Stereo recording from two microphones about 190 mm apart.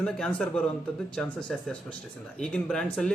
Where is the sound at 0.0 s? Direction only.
5° left (ahead or behind).